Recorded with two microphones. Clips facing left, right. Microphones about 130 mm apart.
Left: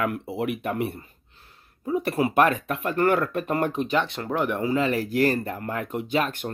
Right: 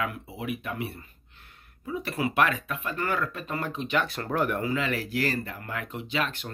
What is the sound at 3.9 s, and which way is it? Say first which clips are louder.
Speech: left 3 dB; 25° left (ahead or behind).